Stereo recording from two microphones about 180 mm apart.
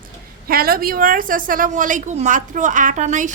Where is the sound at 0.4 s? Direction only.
55° right (ahead or behind).